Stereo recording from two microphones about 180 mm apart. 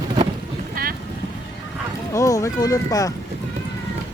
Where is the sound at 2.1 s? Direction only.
15° left (ahead or behind).